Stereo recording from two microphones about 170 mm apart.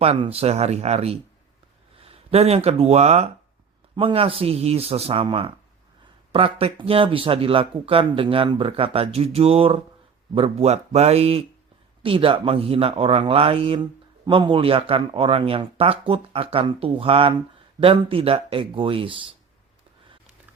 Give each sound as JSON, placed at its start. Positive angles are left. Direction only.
{"t": 0.0, "sound": "speech", "side_deg": -35}